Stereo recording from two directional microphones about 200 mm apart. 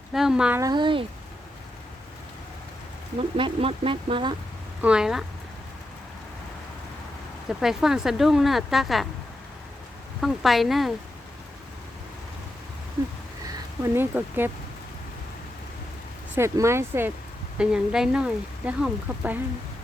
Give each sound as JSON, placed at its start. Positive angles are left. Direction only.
{"t": 0.1, "sound": "a child's voice", "side_deg": 0}
{"t": 0.6, "sound": "speech", "side_deg": -20}
{"t": 3.2, "sound": "speech", "side_deg": -25}
{"t": 4.8, "sound": "speech", "side_deg": -5}
{"t": 7.6, "sound": "speech", "side_deg": 0}
{"t": 10.2, "sound": "speech", "side_deg": 0}
{"t": 13.8, "sound": "speech", "side_deg": -10}
{"t": 16.3, "sound": "speech", "side_deg": -15}